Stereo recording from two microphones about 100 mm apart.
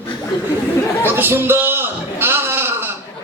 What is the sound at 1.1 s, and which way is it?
A man's voice, 20° right (ahead or behind).